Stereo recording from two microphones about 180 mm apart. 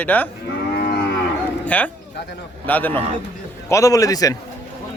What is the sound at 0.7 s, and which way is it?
Livestock, 55° left (ahead or behind).